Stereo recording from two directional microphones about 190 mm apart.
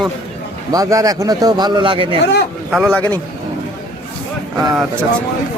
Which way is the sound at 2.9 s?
10° left (ahead or behind).